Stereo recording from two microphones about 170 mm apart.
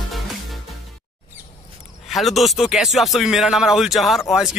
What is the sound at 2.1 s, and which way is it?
Speech, centre (ahead or behind).